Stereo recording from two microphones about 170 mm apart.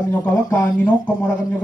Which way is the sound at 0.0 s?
10° left (ahead or behind).